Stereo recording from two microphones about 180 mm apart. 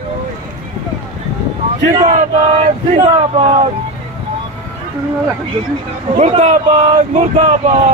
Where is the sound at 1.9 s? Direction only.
35° right (ahead or behind).